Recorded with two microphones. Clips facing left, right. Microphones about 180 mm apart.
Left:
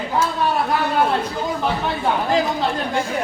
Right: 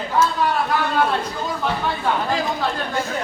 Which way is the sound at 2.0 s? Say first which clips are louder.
Left 4 dB; 20° left (ahead or behind).